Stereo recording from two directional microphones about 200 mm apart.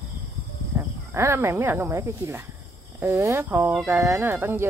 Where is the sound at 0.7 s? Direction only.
10° right (ahead or behind).